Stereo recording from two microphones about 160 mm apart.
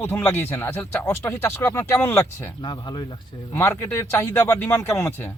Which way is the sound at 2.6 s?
30° left (ahead or behind).